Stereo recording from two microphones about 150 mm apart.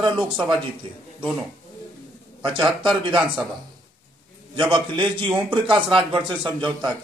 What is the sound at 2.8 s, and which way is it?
Speech, 30° right (ahead or behind).